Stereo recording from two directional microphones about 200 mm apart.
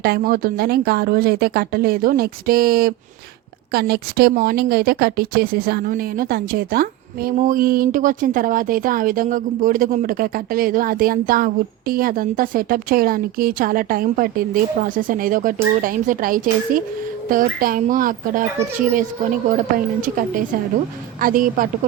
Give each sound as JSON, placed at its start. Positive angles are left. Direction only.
{"t": 0.0, "sound": "speech", "side_deg": -50}
{"t": 19.5, "sound": "a woman's voice", "side_deg": -40}